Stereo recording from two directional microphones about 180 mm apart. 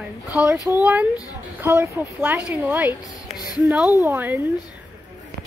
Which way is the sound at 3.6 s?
5° right (ahead or behind).